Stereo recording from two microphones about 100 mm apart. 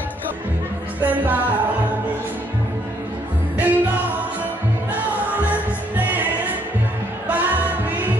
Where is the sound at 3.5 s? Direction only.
15° right (ahead or behind).